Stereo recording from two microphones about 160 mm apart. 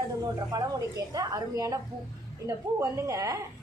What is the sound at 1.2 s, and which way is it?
Speech, 20° right (ahead or behind).